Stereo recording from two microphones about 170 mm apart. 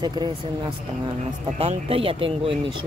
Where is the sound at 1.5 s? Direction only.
35° right (ahead or behind).